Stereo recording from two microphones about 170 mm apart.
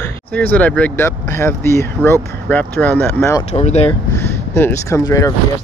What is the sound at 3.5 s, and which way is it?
Speech, 40° left (ahead or behind).